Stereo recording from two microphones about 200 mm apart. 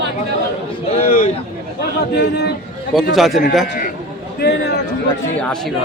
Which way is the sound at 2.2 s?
55° left (ahead or behind).